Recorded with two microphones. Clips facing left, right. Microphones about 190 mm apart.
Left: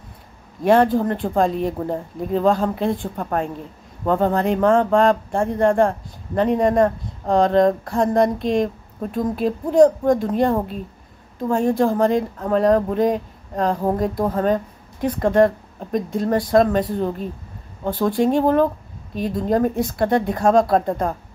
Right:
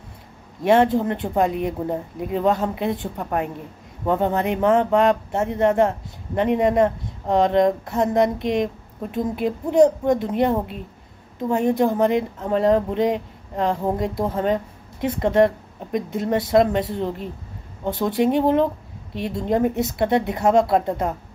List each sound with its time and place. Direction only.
0.7 s speech: 25° right (ahead or behind)